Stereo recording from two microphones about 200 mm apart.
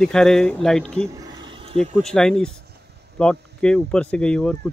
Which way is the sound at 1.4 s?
25° right (ahead or behind).